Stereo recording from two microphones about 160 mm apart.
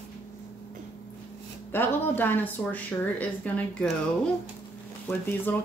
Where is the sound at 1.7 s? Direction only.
10° left (ahead or behind).